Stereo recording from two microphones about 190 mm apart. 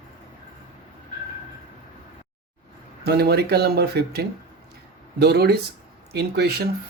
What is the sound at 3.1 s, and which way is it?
Speech, 60° right (ahead or behind).